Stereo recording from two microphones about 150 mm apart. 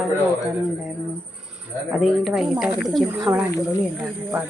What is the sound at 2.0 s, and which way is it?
Speech, centre (ahead or behind).